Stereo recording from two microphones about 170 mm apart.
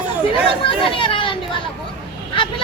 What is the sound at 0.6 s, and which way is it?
Chatter, 30° left (ahead or behind).